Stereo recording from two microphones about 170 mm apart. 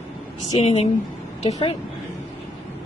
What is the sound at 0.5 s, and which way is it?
Speech, 35° left (ahead or behind).